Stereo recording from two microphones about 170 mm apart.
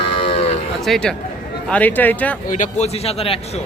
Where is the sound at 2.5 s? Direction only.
50° left (ahead or behind).